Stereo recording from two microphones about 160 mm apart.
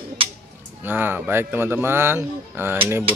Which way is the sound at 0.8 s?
10° right (ahead or behind).